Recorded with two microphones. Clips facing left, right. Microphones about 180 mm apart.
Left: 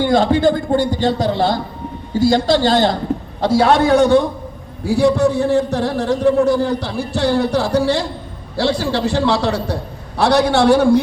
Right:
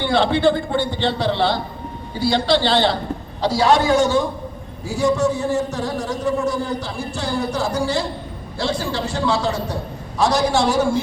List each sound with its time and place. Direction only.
0.0 s a man's voice: 40° left (ahead or behind); by 11.0 s 60° left (ahead or behind)